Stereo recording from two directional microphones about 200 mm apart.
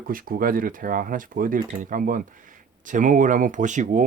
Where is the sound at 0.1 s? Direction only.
45° right (ahead or behind).